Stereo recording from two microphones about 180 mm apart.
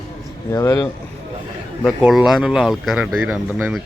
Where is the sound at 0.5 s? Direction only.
20° left (ahead or behind).